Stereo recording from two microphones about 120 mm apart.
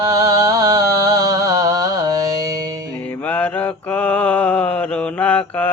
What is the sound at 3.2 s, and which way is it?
Mantra, 15° left (ahead or behind).